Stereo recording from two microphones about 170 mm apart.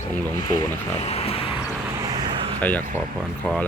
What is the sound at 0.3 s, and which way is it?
Speech, 25° left (ahead or behind).